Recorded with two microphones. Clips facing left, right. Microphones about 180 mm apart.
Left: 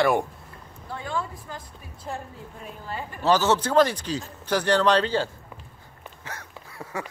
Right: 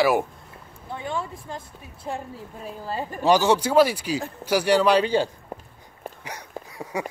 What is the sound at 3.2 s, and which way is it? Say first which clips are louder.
Speech: right 2 dB; 15° right (ahead or behind).